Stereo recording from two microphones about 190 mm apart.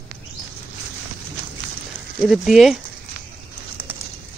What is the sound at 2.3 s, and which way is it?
Speech, centre (ahead or behind).